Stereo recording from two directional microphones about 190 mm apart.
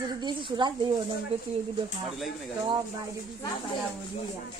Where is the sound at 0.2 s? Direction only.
25° right (ahead or behind).